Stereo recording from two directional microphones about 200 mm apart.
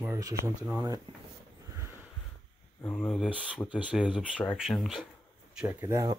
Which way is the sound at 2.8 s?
5° left (ahead or behind).